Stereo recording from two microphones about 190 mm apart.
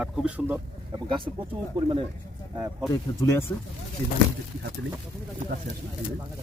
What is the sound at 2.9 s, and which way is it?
Speech, 15° left (ahead or behind).